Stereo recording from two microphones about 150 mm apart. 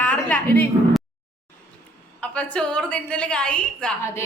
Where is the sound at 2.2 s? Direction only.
10° left (ahead or behind).